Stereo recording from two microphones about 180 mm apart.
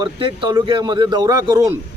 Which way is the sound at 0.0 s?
25° right (ahead or behind).